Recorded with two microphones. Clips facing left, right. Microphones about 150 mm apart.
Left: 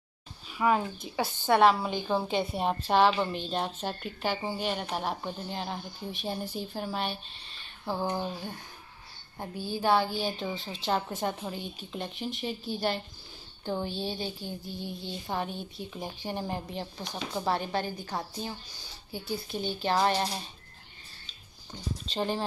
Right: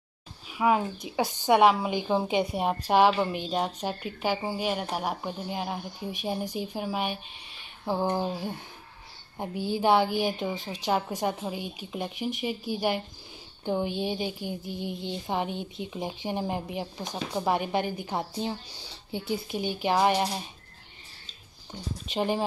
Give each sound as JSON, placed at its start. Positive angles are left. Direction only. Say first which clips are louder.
{"t": 0.5, "sound": "a woman's voice", "louder": "right 2 dB", "side_deg": -5}
{"t": 22.0, "sound": "a woman's voice", "louder": "right 4 dB", "side_deg": -15}